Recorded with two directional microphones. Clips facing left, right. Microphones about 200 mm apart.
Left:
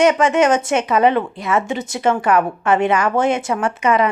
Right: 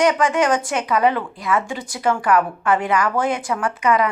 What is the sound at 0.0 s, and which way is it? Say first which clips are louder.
A woman's voice: left 3 dB; 25° left (ahead or behind).